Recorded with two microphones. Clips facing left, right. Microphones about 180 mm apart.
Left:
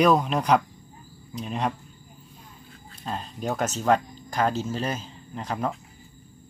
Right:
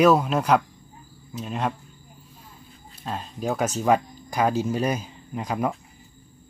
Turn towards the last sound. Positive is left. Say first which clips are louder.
# right 3 dB
turn(degrees=-10)  # may be behind; listen again after turning